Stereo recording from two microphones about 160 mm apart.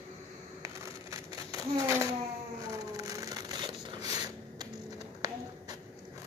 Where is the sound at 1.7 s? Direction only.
15° right (ahead or behind).